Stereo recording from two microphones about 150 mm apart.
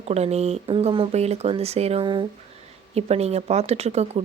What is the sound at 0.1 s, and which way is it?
Speech, 45° right (ahead or behind).